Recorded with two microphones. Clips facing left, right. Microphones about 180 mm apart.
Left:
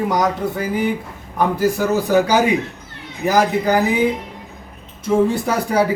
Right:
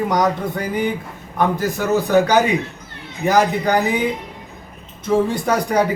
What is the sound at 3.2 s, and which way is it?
Speech, 5° left (ahead or behind).